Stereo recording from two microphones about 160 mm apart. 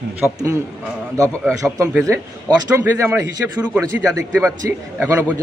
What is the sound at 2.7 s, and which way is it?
Speech, 15° right (ahead or behind).